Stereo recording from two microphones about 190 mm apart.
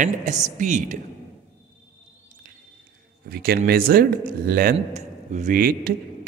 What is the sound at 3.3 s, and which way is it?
Speech, 50° right (ahead or behind).